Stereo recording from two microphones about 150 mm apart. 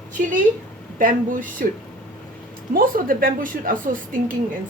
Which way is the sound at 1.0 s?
65° right (ahead or behind).